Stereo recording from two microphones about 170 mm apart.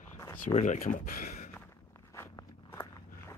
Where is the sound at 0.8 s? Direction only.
55° left (ahead or behind).